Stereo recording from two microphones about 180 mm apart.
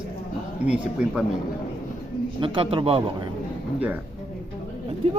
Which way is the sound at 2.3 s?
30° right (ahead or behind).